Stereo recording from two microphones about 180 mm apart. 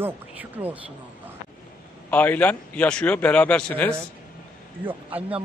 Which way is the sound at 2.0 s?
10° left (ahead or behind).